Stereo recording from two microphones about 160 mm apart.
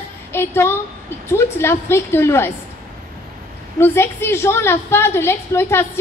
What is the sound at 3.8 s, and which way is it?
A woman's voice, 15° left (ahead or behind).